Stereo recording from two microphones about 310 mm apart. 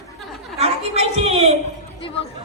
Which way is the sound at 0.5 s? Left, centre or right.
Centre.